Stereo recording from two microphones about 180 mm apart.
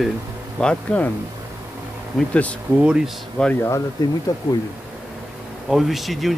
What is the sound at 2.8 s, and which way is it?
Speech, 5° right (ahead or behind).